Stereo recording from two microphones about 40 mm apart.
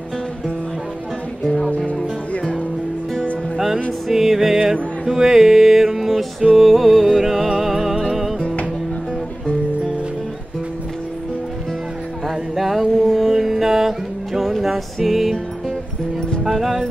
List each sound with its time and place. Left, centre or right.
1.9 s music: left
3.5 s music: centre
12.3 s music: centre
16.4 s speech: centre